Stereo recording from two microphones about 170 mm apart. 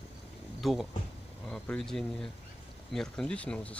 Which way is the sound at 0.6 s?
Centre (ahead or behind).